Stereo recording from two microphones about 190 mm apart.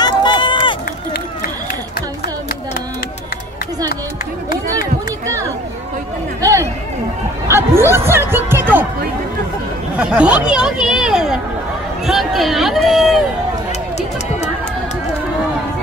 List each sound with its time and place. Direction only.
0.0 s run: 25° left (ahead or behind)
6.4 s a sound: 15° right (ahead or behind)
7.9 s music: 15° right (ahead or behind)
9.9 s speech: 5° right (ahead or behind)